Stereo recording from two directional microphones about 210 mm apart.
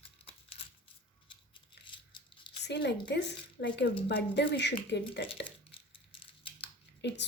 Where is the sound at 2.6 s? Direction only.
55° left (ahead or behind).